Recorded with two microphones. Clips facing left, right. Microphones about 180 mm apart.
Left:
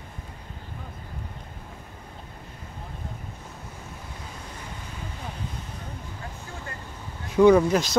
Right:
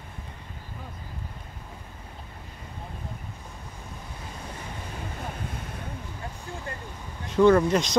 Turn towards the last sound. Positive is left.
turn(degrees=5)  # may be behind; listen again after turning